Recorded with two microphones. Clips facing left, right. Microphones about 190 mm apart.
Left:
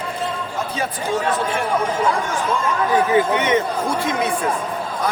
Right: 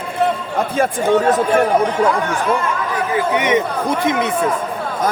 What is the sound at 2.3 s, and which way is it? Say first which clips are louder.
Speech: right 4 dB; 65° right (ahead or behind).